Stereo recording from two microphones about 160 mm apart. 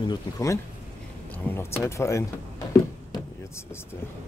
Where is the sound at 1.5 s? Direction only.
15° left (ahead or behind).